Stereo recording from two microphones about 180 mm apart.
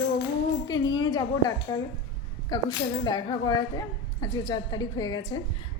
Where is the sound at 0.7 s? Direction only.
20° left (ahead or behind).